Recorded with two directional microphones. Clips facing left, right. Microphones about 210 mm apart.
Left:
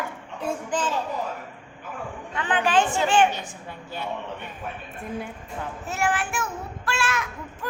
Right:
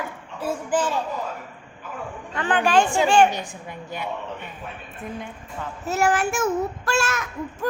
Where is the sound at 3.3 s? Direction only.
15° right (ahead or behind).